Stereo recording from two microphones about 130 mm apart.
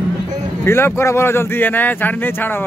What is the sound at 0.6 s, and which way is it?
Speech, 20° left (ahead or behind).